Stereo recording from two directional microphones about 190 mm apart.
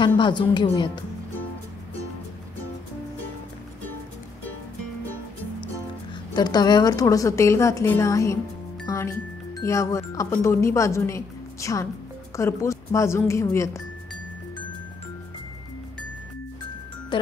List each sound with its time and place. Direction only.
0.0 s a woman's voice: 25° left (ahead or behind)
6.3 s speech: 20° left (ahead or behind)
8.8 s music: 15° left (ahead or behind)
9.6 s speech: 15° left (ahead or behind)
17.1 s speech: 25° left (ahead or behind)